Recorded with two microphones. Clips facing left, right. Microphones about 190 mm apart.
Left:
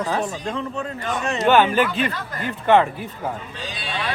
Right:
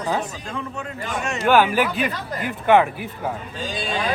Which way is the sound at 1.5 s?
5° right (ahead or behind).